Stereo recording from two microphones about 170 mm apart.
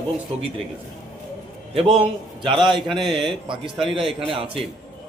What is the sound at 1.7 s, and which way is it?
A man's voice, 35° right (ahead or behind).